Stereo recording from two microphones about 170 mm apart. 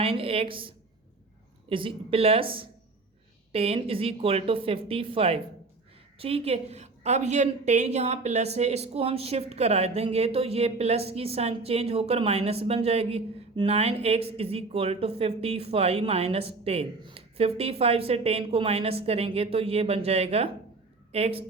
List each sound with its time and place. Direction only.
0.0 s a woman's voice: 35° right (ahead or behind)
1.7 s a woman's voice: 30° right (ahead or behind)